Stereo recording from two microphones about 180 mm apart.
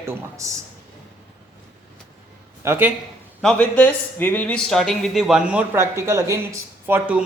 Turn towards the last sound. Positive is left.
turn(degrees=-10)  # may be behind; listen again after turning